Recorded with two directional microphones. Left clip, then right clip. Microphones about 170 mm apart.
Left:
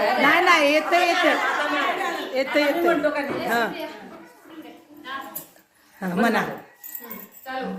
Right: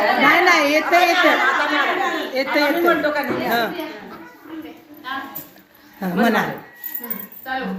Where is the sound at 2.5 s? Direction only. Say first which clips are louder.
Right 3 dB; 10° left (ahead or behind).